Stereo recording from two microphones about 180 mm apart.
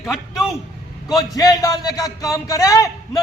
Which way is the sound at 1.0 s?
20° left (ahead or behind).